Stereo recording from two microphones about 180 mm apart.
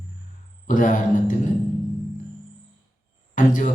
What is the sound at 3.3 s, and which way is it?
Speech, 45° left (ahead or behind).